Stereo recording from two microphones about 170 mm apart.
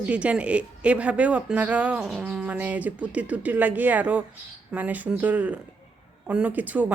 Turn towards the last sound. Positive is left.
turn(degrees=-10)  # may be behind; listen again after turning